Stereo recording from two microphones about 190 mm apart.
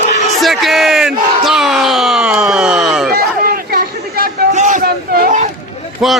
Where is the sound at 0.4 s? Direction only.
Centre (ahead or behind).